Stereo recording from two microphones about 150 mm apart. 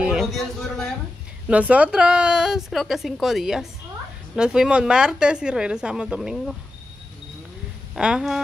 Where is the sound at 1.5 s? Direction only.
10° right (ahead or behind).